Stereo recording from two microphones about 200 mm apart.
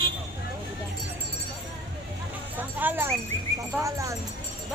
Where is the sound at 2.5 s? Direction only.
10° right (ahead or behind).